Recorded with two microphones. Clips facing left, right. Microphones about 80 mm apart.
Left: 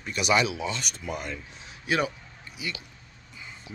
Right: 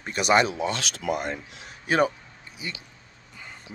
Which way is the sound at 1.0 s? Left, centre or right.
Right.